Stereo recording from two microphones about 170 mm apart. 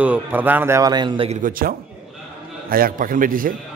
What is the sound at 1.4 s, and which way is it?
A man's voice, 60° right (ahead or behind).